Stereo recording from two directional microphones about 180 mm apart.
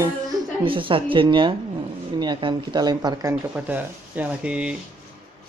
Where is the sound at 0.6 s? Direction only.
30° right (ahead or behind); by 4.8 s 5° right (ahead or behind).